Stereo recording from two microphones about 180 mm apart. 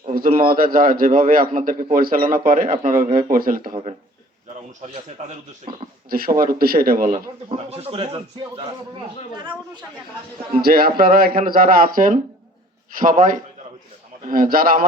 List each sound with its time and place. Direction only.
0.1 s a man's voice: 50° right (ahead or behind)
4.8 s a man's voice: 40° right (ahead or behind)
6.1 s a man's voice: 55° right (ahead or behind)
7.5 s a man's voice: 35° right (ahead or behind)
10.6 s a man's voice: 55° right (ahead or behind)